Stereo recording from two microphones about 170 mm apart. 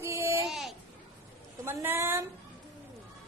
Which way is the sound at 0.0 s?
15° right (ahead or behind).